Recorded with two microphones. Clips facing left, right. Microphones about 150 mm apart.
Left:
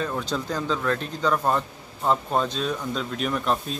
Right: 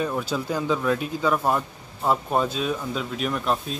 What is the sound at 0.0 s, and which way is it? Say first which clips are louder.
Speech: right 2 dB; 10° right (ahead or behind).